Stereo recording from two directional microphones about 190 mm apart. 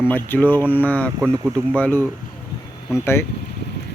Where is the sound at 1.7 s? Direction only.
10° left (ahead or behind).